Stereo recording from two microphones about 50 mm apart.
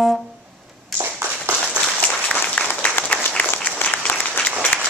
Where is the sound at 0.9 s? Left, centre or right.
Right.